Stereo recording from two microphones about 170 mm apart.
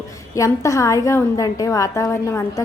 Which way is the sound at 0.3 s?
20° left (ahead or behind).